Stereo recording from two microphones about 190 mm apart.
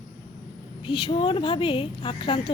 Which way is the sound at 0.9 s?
25° left (ahead or behind).